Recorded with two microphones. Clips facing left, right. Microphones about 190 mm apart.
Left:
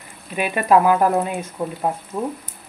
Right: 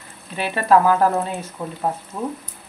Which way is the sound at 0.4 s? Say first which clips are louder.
Even; 15° left (ahead or behind).